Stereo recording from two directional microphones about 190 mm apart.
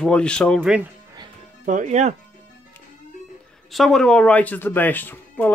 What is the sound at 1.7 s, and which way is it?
Speech, 40° right (ahead or behind).